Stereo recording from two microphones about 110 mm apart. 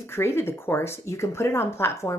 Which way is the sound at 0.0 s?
20° left (ahead or behind).